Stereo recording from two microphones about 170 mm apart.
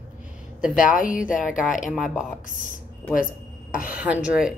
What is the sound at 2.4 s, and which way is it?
Speech, 50° left (ahead or behind).